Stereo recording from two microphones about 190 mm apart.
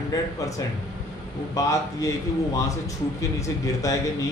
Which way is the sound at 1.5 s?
15° left (ahead or behind).